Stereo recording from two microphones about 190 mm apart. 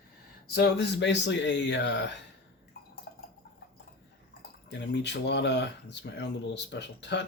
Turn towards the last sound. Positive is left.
turn(degrees=65)  # may be behind; listen again after turning